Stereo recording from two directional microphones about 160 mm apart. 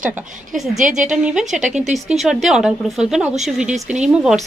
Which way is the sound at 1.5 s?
50° right (ahead or behind).